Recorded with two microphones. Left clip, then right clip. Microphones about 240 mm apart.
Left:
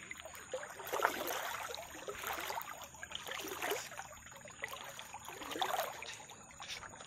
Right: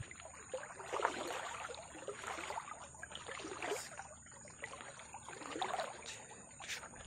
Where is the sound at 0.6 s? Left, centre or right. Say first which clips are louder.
Left 3 dB; left.